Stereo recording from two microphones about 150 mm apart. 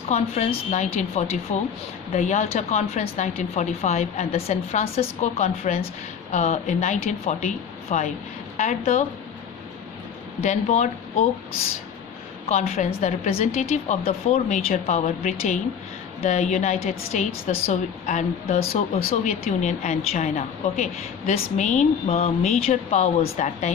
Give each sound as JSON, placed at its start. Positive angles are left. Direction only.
{"t": 0.1, "sound": "a woman's voice", "side_deg": 45}
{"t": 10.4, "sound": "a woman's voice", "side_deg": 50}
{"t": 12.5, "sound": "a woman's voice", "side_deg": 45}
{"t": 19.2, "sound": "a woman's voice", "side_deg": 55}